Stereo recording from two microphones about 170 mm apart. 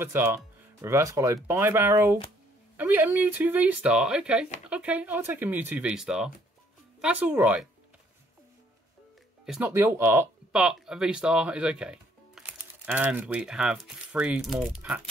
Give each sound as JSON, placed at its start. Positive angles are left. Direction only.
{"t": 0.0, "sound": "speech", "side_deg": -15}
{"t": 9.5, "sound": "speech", "side_deg": -10}